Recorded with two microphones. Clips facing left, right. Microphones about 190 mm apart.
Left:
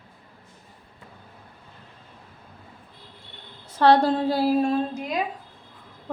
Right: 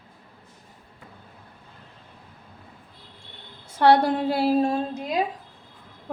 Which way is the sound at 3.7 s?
10° right (ahead or behind).